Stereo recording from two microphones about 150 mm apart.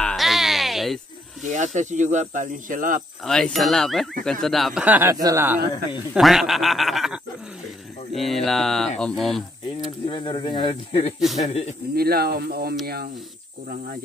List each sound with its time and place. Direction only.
0.0 s music: centre (ahead or behind)
1.4 s speech: 55° right (ahead or behind)
3.3 s speech: centre (ahead or behind)
4.8 s speech: 10° right (ahead or behind)
5.1 s speech: 20° right (ahead or behind)
6.1 s speech: centre (ahead or behind)
10.0 s speech: 35° left (ahead or behind)
11.9 s speech: 90° right